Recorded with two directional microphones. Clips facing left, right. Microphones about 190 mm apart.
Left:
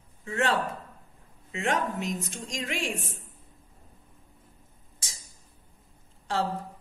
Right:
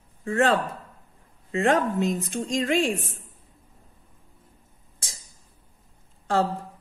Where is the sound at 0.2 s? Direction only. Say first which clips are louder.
Right 5 dB; 50° right (ahead or behind).